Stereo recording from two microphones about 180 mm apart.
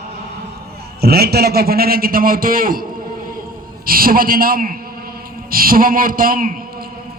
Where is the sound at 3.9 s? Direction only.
55° right (ahead or behind).